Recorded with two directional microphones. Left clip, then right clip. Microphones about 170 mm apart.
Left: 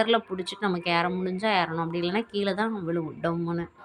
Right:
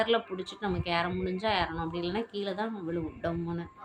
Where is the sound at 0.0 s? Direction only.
35° left (ahead or behind).